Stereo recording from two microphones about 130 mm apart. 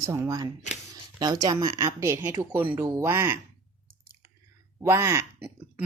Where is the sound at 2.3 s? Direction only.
15° right (ahead or behind).